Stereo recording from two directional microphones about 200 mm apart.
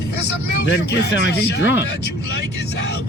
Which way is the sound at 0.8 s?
55° left (ahead or behind).